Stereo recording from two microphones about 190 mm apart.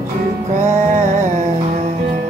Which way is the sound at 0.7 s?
40° right (ahead or behind).